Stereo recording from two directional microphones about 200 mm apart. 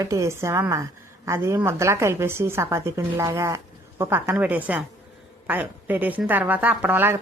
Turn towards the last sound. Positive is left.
turn(degrees=-10)  # may be behind; listen again after turning